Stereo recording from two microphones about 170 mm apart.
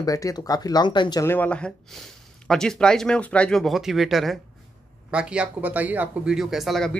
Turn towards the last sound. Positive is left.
turn(degrees=0)  # may be behind; listen again after turning